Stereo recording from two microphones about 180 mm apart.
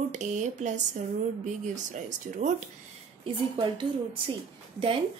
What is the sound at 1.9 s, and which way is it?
Speech, 40° right (ahead or behind).